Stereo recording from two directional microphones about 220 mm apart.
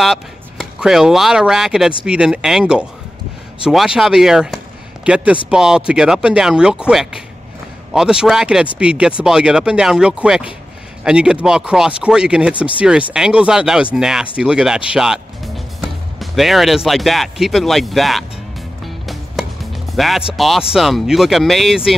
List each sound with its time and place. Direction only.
0.0 s speech: centre (ahead or behind)
18.9 s music: centre (ahead or behind)
20.3 s speech: centre (ahead or behind)